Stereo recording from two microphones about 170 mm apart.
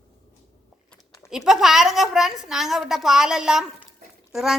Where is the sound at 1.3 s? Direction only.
Centre (ahead or behind).